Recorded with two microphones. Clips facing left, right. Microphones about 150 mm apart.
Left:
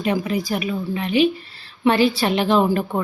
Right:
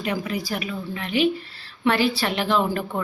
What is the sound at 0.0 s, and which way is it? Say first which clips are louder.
A woman's voice: left 5 dB; 25° left (ahead or behind).